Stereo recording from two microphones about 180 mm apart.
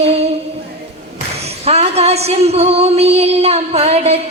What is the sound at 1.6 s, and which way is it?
Female singing, 35° right (ahead or behind).